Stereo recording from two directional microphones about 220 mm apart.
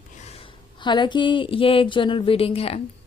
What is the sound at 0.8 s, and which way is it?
Speech, 20° left (ahead or behind).